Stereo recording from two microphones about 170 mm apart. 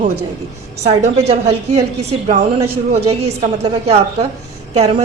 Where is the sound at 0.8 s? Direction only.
35° right (ahead or behind).